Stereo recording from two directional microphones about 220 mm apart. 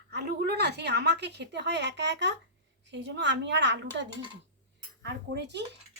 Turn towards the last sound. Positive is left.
turn(degrees=-50)  # may be behind; listen again after turning